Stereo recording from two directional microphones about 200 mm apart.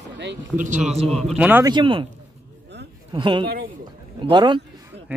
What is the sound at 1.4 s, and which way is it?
Speech, 10° right (ahead or behind).